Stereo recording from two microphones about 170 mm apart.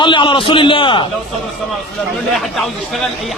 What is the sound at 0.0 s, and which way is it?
Speech, 30° left (ahead or behind).